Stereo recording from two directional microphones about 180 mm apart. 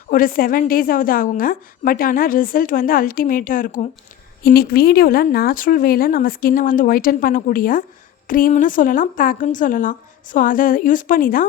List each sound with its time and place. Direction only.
0.1 s a woman's voice: 50° left (ahead or behind)